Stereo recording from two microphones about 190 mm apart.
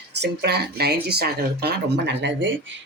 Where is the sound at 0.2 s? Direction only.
60° right (ahead or behind).